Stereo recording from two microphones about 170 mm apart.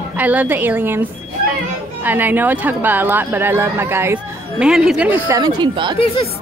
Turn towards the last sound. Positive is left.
turn(degrees=-25)  # may be behind; listen again after turning